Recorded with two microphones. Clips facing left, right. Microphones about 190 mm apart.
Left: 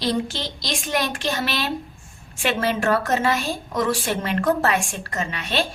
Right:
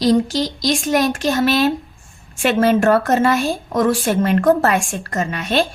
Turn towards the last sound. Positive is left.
turn(degrees=-45)  # may be behind; listen again after turning